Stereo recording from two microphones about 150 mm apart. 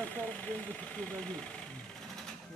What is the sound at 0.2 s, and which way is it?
Speech, 10° left (ahead or behind).